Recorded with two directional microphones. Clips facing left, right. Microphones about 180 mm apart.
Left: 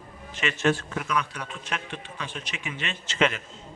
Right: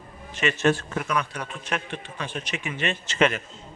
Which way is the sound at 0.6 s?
45° right (ahead or behind).